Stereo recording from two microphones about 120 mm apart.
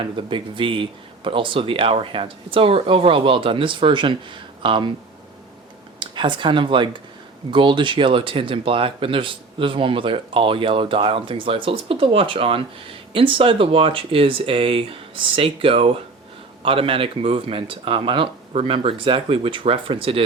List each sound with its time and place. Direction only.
0.0 s speech: 45° right (ahead or behind)
6.0 s speech: 40° right (ahead or behind)